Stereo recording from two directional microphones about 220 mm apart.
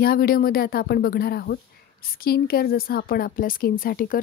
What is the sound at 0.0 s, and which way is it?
A woman's voice, 45° left (ahead or behind).